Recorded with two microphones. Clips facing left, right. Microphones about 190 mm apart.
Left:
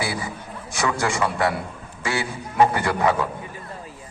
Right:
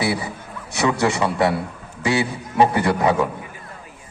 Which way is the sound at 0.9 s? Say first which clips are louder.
Right 4 dB; 20° right (ahead or behind).